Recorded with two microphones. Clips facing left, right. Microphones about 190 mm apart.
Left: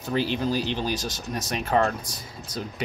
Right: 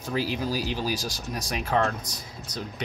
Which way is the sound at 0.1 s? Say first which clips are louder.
Left 3 dB; 5° right (ahead or behind).